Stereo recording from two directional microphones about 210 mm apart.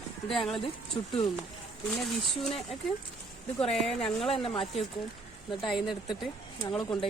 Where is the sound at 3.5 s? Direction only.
Centre (ahead or behind).